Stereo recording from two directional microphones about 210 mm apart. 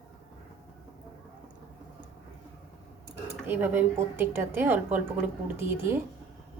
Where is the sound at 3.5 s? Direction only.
10° right (ahead or behind).